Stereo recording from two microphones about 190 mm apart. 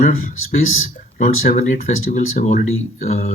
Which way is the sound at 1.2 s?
45° left (ahead or behind).